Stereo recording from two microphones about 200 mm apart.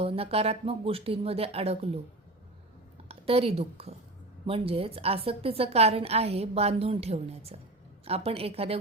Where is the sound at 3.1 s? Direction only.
30° right (ahead or behind).